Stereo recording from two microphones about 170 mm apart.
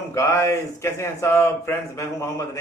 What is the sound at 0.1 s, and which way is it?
Speech, 15° left (ahead or behind).